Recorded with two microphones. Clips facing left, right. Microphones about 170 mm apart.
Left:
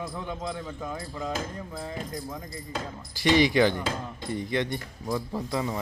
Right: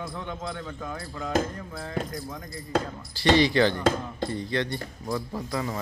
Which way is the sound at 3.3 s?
15° left (ahead or behind).